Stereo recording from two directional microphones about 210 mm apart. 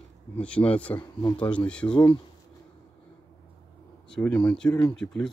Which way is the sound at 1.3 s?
5° left (ahead or behind).